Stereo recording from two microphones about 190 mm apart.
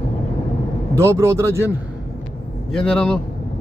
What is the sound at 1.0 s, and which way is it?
Speech, 15° right (ahead or behind).